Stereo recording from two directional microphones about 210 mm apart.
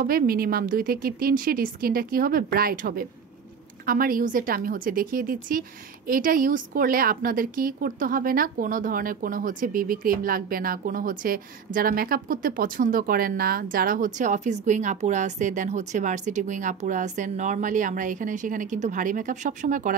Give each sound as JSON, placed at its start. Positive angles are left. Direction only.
{"t": 0.0, "sound": "a woman's voice", "side_deg": -45}